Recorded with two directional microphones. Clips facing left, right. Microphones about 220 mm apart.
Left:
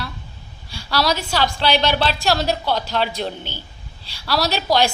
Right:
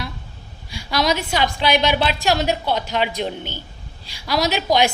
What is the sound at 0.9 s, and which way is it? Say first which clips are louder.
A woman's voice: right 1 dB; 15° right (ahead or behind).